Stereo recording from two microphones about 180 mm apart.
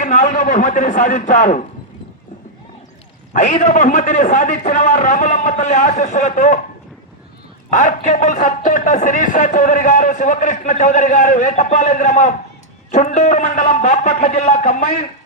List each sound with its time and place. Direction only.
0.0 s a man's voice: 40° left (ahead or behind)
3.3 s a man's voice: 40° left (ahead or behind)
7.7 s a man's voice: 45° left (ahead or behind)